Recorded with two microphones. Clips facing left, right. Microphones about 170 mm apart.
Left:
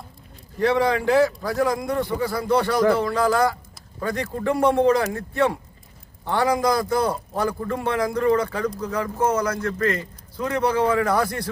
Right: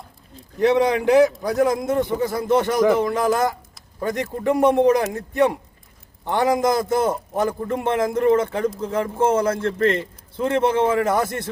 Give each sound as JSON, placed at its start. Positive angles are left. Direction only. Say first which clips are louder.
{"t": 0.6, "sound": "a man's voice", "louder": "right 3 dB", "side_deg": -20}